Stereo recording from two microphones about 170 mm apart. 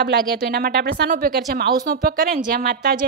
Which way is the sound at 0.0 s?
70° right (ahead or behind).